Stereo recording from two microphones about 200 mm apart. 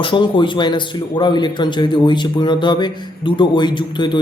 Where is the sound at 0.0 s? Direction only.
25° left (ahead or behind).